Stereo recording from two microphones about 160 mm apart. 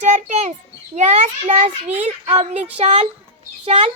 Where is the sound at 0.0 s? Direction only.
45° right (ahead or behind).